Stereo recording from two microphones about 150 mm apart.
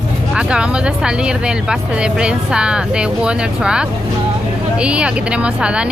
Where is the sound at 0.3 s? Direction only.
5° right (ahead or behind).